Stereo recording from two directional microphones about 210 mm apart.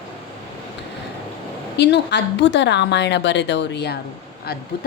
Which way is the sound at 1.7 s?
55° left (ahead or behind).